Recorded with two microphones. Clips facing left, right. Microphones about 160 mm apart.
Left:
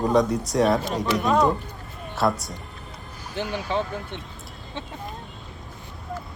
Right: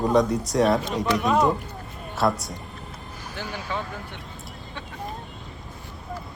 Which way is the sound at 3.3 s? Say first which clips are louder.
Left 5 dB; 20° left (ahead or behind).